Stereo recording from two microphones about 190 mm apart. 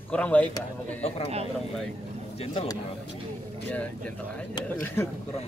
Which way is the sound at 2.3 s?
25° left (ahead or behind).